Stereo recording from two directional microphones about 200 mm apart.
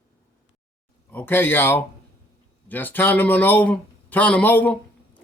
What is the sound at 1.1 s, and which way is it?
Speech, 10° left (ahead or behind).